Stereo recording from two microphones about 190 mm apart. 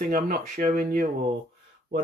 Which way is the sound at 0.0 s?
50° right (ahead or behind).